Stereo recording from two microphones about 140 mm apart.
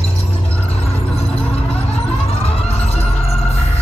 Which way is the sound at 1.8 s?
45° left (ahead or behind).